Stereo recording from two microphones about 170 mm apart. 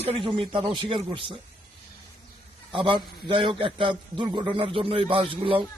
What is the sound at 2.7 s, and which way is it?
A man's voice, 30° right (ahead or behind).